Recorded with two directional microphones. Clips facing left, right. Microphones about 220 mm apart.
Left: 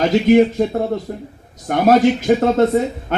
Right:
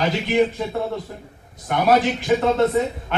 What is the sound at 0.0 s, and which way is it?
A man's voice, 45° left (ahead or behind).